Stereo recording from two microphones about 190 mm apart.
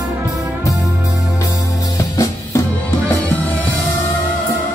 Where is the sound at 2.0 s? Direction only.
15° left (ahead or behind).